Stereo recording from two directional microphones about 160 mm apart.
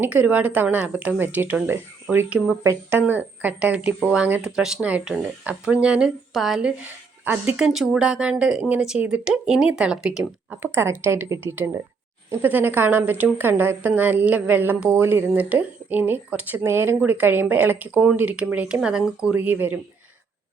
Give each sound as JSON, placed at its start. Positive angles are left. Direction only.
{"t": 0.0, "sound": "speech", "side_deg": -10}